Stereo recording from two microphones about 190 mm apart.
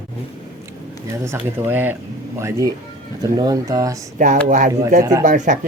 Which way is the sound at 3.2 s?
20° right (ahead or behind).